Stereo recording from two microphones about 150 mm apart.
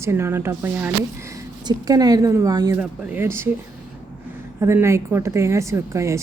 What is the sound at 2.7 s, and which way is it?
Speech, 15° right (ahead or behind).